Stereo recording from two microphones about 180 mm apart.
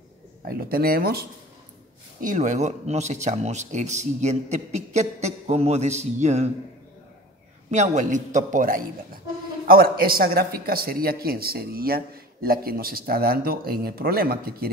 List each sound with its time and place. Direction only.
0.5 s speech: 55° right (ahead or behind)
2.2 s speech: 45° right (ahead or behind)
7.7 s a man's voice: 40° right (ahead or behind); by 14.7 s 55° right (ahead or behind)